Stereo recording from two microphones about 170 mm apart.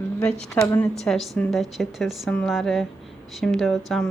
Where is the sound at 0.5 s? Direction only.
15° left (ahead or behind).